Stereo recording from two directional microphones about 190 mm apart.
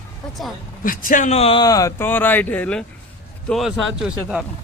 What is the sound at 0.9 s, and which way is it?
Speech, 45° left (ahead or behind).